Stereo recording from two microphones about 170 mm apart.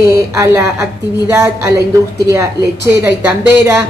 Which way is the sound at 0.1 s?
15° right (ahead or behind).